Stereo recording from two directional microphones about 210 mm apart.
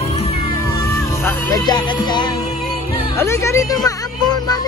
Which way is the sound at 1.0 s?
15° left (ahead or behind).